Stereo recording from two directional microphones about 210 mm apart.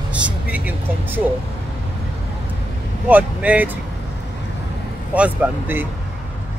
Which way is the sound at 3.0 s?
5° right (ahead or behind).